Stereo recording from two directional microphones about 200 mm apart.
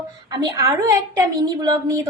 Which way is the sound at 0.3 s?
20° right (ahead or behind).